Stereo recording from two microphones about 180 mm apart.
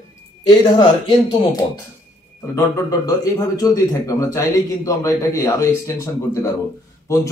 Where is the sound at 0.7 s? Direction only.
25° left (ahead or behind).